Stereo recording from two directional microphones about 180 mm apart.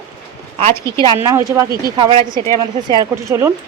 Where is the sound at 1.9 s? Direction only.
25° right (ahead or behind).